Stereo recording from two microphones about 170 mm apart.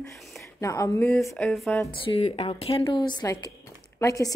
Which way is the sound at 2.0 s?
30° left (ahead or behind).